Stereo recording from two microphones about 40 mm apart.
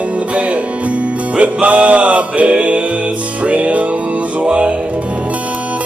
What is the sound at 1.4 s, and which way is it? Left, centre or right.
Music, right.